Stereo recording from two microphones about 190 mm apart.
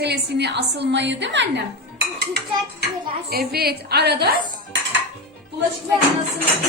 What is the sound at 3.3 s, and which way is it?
Speech, 55° right (ahead or behind).